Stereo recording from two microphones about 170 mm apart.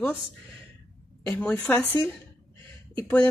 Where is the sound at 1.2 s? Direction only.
10° left (ahead or behind).